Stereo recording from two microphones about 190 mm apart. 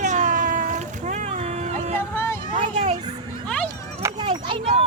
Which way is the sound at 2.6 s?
35° right (ahead or behind).